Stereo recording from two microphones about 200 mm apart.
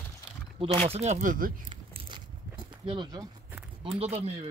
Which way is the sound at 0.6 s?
30° right (ahead or behind).